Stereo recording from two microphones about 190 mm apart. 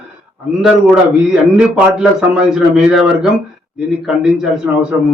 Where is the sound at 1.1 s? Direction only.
5° right (ahead or behind).